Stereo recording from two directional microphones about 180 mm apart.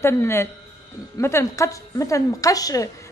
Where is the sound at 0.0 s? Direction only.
15° left (ahead or behind).